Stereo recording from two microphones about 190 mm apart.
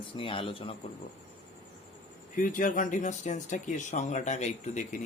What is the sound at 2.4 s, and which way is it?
Speech, 45° left (ahead or behind).